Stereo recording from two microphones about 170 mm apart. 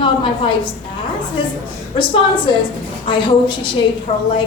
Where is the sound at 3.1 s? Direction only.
25° left (ahead or behind).